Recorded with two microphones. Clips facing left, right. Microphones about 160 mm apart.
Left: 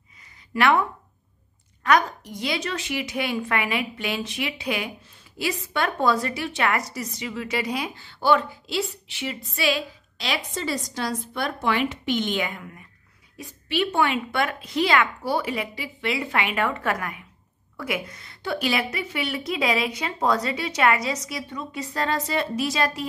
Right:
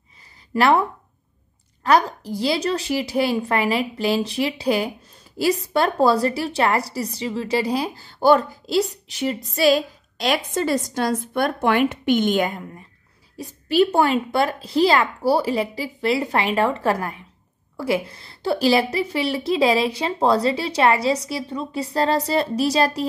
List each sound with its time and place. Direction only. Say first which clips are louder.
0.6 s a woman's voice: right 3 dB; 35° right (ahead or behind)